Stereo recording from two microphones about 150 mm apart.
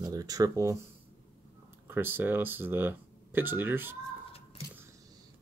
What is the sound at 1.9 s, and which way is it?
Speech, 15° right (ahead or behind).